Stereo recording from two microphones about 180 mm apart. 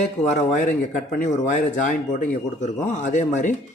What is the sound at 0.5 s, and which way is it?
Speech, 45° left (ahead or behind).